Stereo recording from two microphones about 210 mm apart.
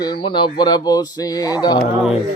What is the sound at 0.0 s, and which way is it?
Speech, 20° left (ahead or behind).